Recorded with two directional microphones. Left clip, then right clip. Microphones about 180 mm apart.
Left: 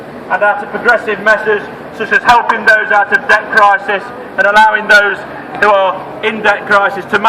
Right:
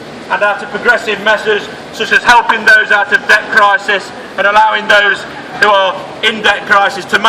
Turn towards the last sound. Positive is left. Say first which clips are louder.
# right 1 dB
turn(degrees=-45)  # may be behind; listen again after turning